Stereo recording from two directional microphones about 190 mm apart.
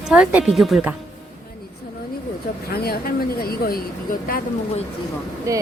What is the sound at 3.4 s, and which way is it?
Speech, 50° left (ahead or behind).